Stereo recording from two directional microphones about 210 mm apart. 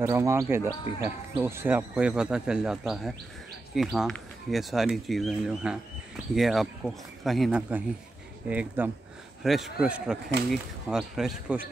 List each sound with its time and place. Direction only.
0.0 s speech: 15° right (ahead or behind)